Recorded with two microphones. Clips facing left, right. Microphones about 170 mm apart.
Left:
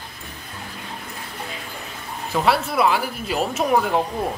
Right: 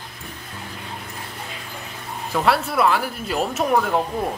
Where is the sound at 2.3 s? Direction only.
Centre (ahead or behind).